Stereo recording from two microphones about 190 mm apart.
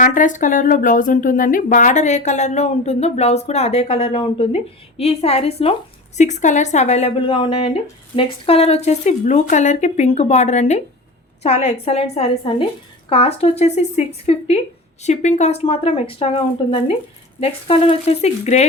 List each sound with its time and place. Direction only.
0.0 s speech: 45° left (ahead or behind)